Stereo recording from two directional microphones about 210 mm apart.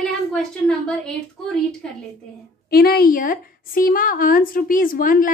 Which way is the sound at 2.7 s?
45° left (ahead or behind).